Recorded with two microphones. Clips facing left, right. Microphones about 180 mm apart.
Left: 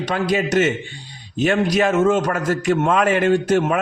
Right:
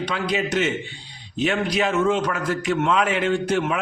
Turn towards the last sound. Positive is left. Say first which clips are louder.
# left 5 dB
turn(degrees=45)  # may be behind; listen again after turning